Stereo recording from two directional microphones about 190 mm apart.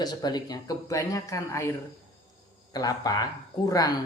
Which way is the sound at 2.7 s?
20° left (ahead or behind).